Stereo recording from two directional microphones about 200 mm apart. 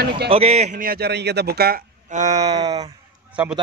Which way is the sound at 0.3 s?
30° right (ahead or behind).